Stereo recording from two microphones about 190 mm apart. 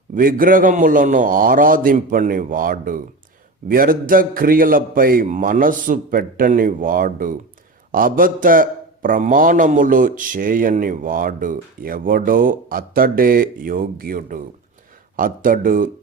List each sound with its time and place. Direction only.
0.1 s a man's voice: 50° right (ahead or behind)